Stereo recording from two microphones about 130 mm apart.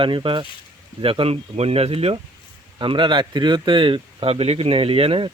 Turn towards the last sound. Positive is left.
turn(degrees=-45)  # may be behind; listen again after turning